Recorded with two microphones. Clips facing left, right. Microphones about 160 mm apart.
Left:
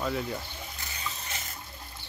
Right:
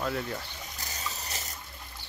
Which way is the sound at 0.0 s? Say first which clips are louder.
Left 1 dB; 5° left (ahead or behind).